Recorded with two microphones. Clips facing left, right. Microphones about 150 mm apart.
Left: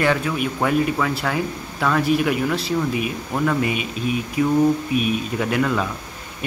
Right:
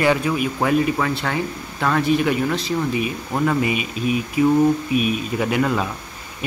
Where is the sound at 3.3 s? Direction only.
10° right (ahead or behind).